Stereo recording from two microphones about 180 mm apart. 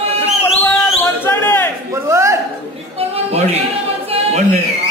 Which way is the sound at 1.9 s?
15° right (ahead or behind).